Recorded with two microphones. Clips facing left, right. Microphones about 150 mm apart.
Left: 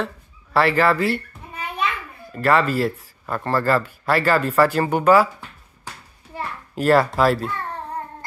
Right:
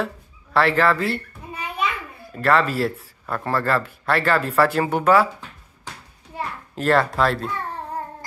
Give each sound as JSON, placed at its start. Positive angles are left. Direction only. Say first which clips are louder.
{"t": 0.0, "sound": "speech", "louder": "even", "side_deg": 0}
{"t": 2.3, "sound": "speech", "louder": "left 1 dB", "side_deg": 0}
{"t": 6.7, "sound": "speech", "louder": "left 3 dB", "side_deg": 5}